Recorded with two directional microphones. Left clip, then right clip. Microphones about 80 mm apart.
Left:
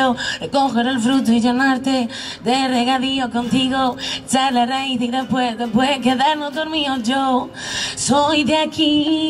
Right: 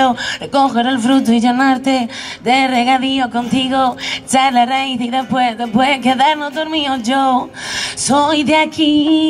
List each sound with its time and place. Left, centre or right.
0.0 s speech: right